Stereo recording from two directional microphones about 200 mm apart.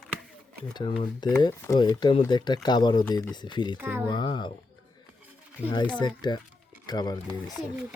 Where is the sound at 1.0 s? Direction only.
20° left (ahead or behind).